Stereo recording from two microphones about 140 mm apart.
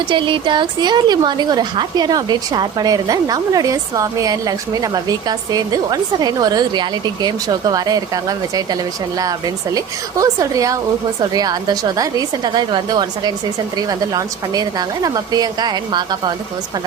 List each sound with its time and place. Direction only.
0.1 s a woman's voice: 35° right (ahead or behind)
9.7 s a woman's voice: 25° right (ahead or behind)